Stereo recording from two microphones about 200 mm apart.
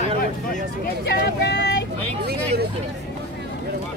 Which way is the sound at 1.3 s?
60° left (ahead or behind).